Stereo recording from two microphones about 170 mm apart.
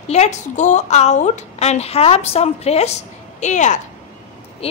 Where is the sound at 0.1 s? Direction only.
40° left (ahead or behind).